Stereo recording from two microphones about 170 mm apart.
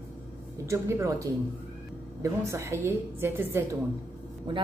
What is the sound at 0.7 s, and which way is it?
A woman's voice, 15° right (ahead or behind).